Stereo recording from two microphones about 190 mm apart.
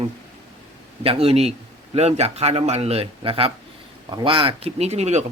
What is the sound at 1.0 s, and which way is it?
Speech, 30° right (ahead or behind).